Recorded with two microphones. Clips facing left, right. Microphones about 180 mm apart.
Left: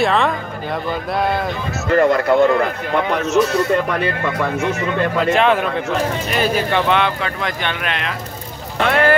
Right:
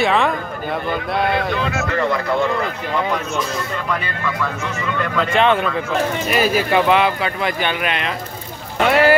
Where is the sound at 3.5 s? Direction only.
65° left (ahead or behind).